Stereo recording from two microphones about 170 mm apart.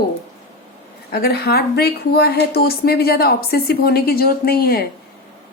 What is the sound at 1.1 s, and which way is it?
A woman's voice, 70° left (ahead or behind).